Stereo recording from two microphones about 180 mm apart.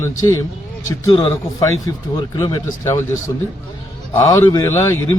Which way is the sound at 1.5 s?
20° left (ahead or behind).